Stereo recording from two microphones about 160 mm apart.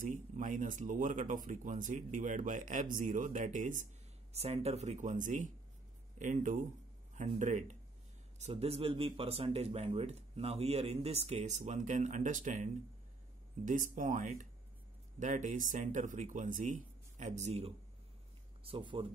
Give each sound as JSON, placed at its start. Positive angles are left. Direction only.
{"t": 0.0, "sound": "speech", "side_deg": -55}
{"t": 8.4, "sound": "speech", "side_deg": -40}